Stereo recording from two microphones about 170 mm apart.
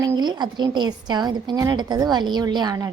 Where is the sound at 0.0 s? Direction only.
25° right (ahead or behind).